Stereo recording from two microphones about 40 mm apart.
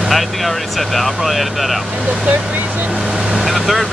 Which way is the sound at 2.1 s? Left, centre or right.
Right.